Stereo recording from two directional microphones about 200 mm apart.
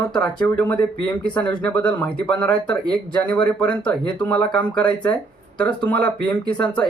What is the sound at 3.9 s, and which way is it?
Speech, 5° left (ahead or behind).